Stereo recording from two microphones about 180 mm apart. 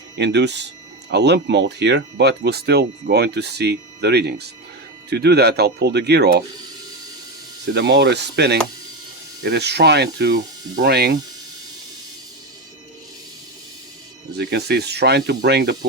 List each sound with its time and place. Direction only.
0.2 s speech: 75° right (ahead or behind)
7.7 s speech: 75° right (ahead or behind)
14.3 s speech: 65° right (ahead or behind)